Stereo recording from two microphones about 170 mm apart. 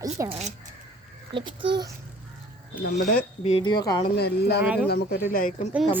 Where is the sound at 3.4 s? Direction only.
35° left (ahead or behind).